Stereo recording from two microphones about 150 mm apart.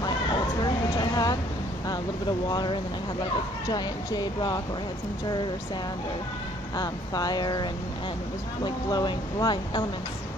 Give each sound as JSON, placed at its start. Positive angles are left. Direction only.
{"t": 0.6, "sound": "a sound", "side_deg": 25}
{"t": 2.5, "sound": "speech", "side_deg": 30}
{"t": 6.8, "sound": "speech", "side_deg": 25}
{"t": 8.6, "sound": "speech", "side_deg": 30}